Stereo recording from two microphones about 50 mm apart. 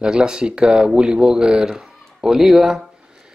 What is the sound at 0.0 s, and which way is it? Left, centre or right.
Speech, centre.